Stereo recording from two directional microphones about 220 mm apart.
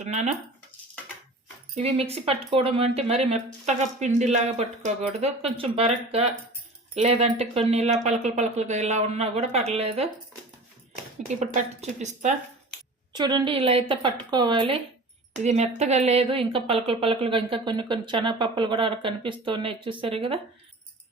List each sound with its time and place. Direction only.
0.0 s speech: 30° right (ahead or behind)
1.7 s speech: 30° right (ahead or behind)
11.3 s speech: 35° right (ahead or behind)
13.1 s speech: 20° right (ahead or behind)